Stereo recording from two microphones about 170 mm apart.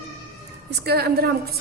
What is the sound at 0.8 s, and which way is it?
Speech, 70° right (ahead or behind).